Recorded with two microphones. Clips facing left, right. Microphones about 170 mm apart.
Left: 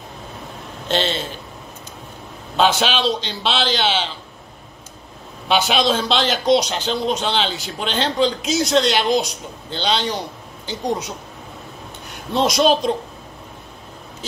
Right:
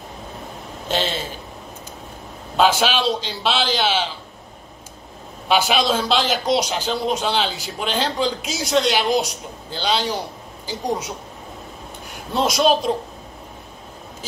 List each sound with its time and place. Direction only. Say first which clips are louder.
0.8 s a man's voice: left 2 dB; 5° right (ahead or behind)
2.5 s a man's voice: even; 5° right (ahead or behind)
5.5 s a man's voice: left 1 dB; 5° right (ahead or behind)
12.4 s a man's voice: left 1 dB; 5° right (ahead or behind)